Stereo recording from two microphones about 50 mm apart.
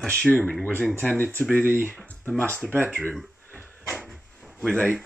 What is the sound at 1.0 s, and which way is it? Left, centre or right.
Speech, left.